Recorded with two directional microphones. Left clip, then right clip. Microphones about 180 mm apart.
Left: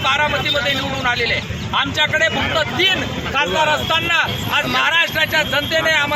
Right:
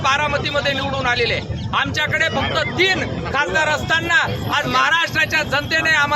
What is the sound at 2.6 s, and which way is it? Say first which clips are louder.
Speech: even; 15° right (ahead or behind).